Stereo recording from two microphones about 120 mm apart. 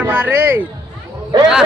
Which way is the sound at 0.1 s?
15° right (ahead or behind).